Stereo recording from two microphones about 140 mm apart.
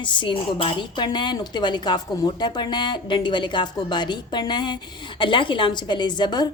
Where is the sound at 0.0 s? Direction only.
35° left (ahead or behind).